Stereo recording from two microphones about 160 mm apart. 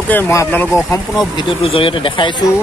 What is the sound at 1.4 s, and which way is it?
Speech, 30° left (ahead or behind).